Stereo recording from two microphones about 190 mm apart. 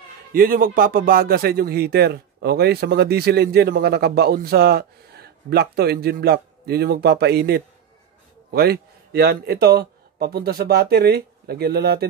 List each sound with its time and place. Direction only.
0.3 s a man's voice: 50° right (ahead or behind)